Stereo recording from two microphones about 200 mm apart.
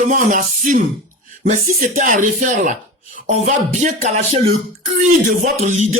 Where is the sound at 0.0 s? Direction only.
40° right (ahead or behind).